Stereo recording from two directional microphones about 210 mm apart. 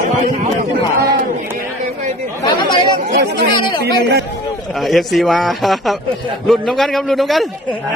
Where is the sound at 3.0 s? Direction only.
45° right (ahead or behind).